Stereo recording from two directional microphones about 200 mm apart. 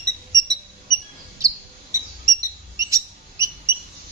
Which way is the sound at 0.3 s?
15° right (ahead or behind).